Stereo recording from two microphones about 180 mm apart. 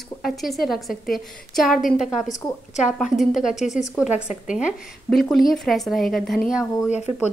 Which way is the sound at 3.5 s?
40° left (ahead or behind).